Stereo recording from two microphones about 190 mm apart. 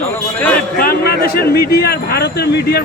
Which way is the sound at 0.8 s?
50° left (ahead or behind).